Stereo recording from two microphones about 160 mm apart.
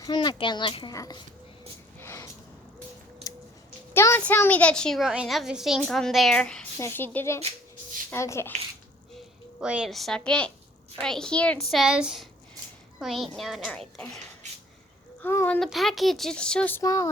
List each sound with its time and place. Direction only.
0.0 s a child's voice: 25° left (ahead or behind)
2.0 s a sound: 15° left (ahead or behind)
3.9 s a child's voice: 15° left (ahead or behind)
9.1 s a child's voice: 5° right (ahead or behind)
15.2 s a woman's voice: 15° left (ahead or behind)
16.8 s a child's voice: 20° left (ahead or behind)